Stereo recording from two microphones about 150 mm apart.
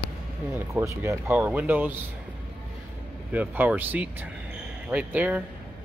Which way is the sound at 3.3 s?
10° right (ahead or behind).